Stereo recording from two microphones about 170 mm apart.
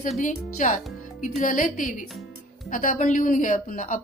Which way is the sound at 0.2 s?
50° left (ahead or behind).